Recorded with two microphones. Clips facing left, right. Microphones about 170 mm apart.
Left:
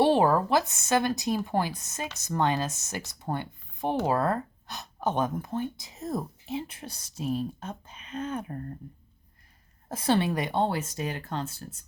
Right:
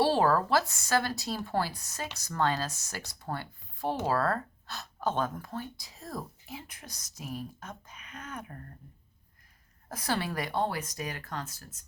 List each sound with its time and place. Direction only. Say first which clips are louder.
0.0 s speech: left 3 dB; 15° left (ahead or behind)
9.9 s speech: left 7 dB; 25° left (ahead or behind)